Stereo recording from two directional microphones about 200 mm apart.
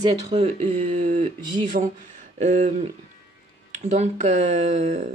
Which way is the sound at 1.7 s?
40° right (ahead or behind).